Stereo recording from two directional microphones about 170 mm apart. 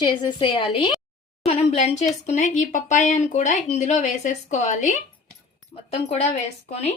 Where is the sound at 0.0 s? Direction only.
25° left (ahead or behind).